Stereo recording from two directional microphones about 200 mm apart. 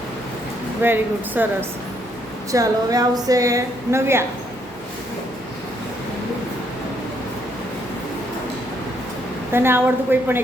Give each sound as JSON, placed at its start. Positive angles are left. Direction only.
{"t": 0.8, "sound": "a woman's voice", "side_deg": -10}
{"t": 9.5, "sound": "a woman's voice", "side_deg": -10}